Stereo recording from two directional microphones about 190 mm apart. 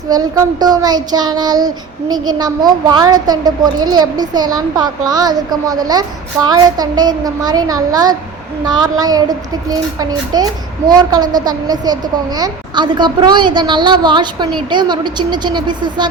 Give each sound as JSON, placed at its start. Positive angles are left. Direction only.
{"t": 0.1, "sound": "speech", "side_deg": -20}